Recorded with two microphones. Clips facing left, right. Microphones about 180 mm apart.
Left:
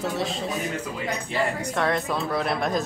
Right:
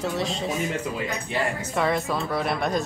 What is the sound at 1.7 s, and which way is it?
Speech, 5° right (ahead or behind).